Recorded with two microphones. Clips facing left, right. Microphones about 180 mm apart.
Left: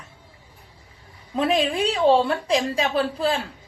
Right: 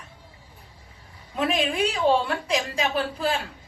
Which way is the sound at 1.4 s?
30° left (ahead or behind).